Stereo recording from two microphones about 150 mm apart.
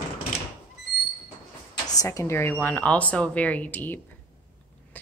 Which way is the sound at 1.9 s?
20° left (ahead or behind).